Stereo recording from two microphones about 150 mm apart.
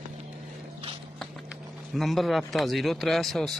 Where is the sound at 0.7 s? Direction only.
35° right (ahead or behind).